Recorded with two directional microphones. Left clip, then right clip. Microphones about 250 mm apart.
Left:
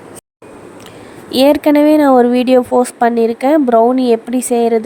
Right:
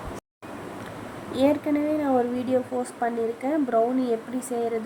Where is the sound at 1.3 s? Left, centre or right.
Left.